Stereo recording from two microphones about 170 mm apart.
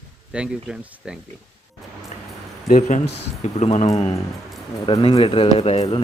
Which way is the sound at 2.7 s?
45° left (ahead or behind).